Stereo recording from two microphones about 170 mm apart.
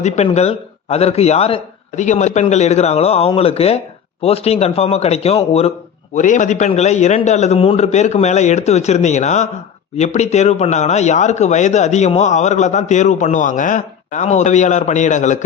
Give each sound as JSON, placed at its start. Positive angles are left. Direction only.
{"t": 0.3, "sound": "speech", "side_deg": 40}
{"t": 6.1, "sound": "speech", "side_deg": 45}